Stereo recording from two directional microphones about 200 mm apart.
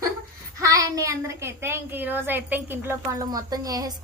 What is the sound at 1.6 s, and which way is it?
A woman's voice, 10° right (ahead or behind).